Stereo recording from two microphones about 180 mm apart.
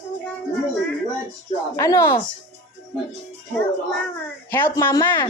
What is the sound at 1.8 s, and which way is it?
Speech, 20° left (ahead or behind).